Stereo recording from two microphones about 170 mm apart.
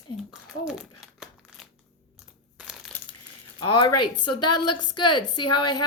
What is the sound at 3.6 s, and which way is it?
A woman's voice, 30° left (ahead or behind).